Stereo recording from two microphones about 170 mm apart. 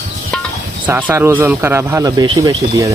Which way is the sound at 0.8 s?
10° right (ahead or behind).